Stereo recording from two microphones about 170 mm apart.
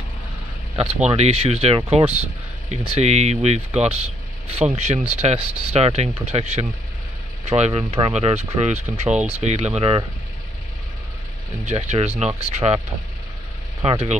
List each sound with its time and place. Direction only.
1.0 s speech: 40° right (ahead or behind)
11.6 s speech: 40° right (ahead or behind)
13.8 s speech: 35° right (ahead or behind)